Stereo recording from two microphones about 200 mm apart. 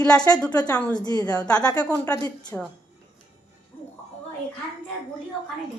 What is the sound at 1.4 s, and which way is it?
Speech, 5° left (ahead or behind).